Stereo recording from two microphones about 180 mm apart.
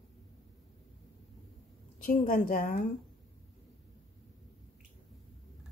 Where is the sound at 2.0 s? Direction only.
50° left (ahead or behind).